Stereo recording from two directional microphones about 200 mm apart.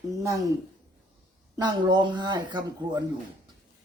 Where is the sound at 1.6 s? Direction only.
20° right (ahead or behind).